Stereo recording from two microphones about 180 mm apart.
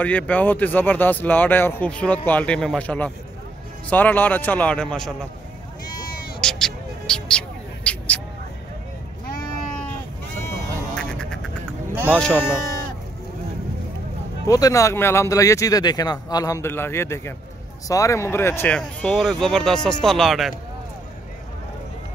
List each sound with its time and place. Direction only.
0.0 s speech: 10° left (ahead or behind)
6.0 s bleat: 55° left (ahead or behind)
6.4 s music: 5° left (ahead or behind)
10.4 s duck: 10° left (ahead or behind)
11.9 s sheep: 10° right (ahead or behind)
12.2 s speech: 5° left (ahead or behind)
14.5 s speech: 20° left (ahead or behind); by 20.5 s centre (ahead or behind)